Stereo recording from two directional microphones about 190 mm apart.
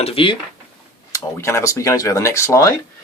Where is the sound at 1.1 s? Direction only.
15° left (ahead or behind).